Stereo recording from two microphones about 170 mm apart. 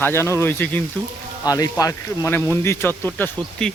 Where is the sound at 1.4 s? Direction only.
20° left (ahead or behind).